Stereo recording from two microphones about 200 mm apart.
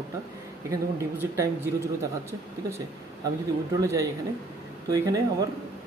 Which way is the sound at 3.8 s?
15° right (ahead or behind).